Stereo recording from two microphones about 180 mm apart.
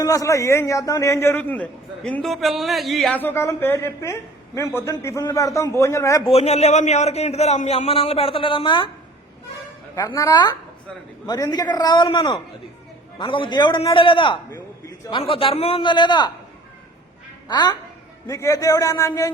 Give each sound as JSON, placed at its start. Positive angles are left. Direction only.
{"t": 0.0, "sound": "a man's voice", "side_deg": 20}
{"t": 6.2, "sound": "a man's voice", "side_deg": 35}
{"t": 9.9, "sound": "a man's voice", "side_deg": 20}
{"t": 14.5, "sound": "a sound", "side_deg": 15}
{"t": 15.1, "sound": "a man's voice", "side_deg": 30}
{"t": 17.5, "sound": "a man's voice", "side_deg": 25}